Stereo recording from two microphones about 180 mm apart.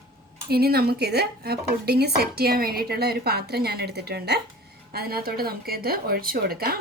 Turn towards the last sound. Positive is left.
turn(degrees=-55)  # may be behind; listen again after turning